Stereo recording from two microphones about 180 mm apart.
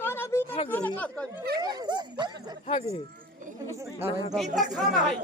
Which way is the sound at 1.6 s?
25° right (ahead or behind).